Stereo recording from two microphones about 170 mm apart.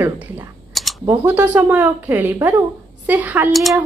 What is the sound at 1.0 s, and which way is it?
Speech, 10° right (ahead or behind).